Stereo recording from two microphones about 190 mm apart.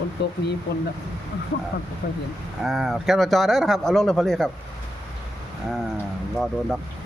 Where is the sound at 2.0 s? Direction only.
50° left (ahead or behind).